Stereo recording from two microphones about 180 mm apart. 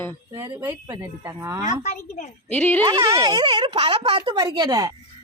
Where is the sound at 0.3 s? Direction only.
20° right (ahead or behind).